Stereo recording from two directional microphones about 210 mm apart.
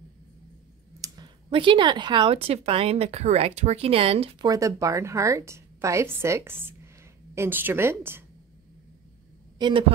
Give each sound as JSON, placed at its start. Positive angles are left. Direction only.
{"t": 1.0, "sound": "a woman's voice", "side_deg": -20}
{"t": 9.6, "sound": "speech", "side_deg": -25}